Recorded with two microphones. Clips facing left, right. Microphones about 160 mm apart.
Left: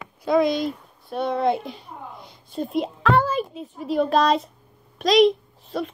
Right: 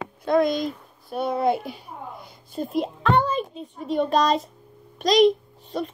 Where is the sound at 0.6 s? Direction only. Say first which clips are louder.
Left 2 dB; centre (ahead or behind).